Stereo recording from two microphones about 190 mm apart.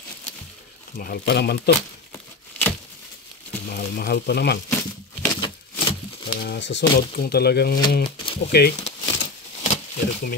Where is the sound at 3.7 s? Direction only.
55° left (ahead or behind).